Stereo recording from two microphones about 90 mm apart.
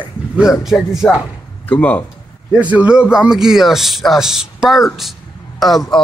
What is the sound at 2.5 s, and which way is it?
Speech, 15° right (ahead or behind).